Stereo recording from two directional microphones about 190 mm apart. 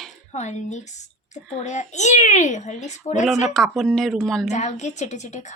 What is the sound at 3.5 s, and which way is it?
Speech, centre (ahead or behind).